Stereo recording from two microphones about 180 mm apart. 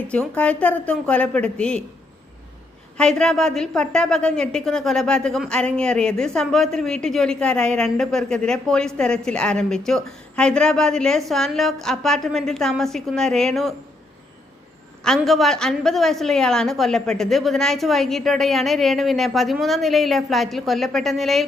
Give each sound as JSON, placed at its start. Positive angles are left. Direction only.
{"t": 0.1, "sound": "a woman's voice", "side_deg": 5}
{"t": 3.0, "sound": "a woman's voice", "side_deg": 5}
{"t": 15.0, "sound": "a woman's voice", "side_deg": 0}